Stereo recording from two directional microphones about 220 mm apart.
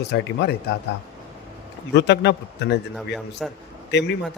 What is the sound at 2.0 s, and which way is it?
Speech, 50° left (ahead or behind).